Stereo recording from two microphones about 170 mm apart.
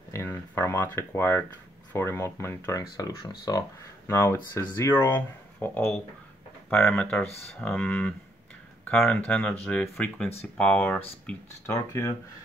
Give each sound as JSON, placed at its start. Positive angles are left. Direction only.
{"t": 0.1, "sound": "speech", "side_deg": 15}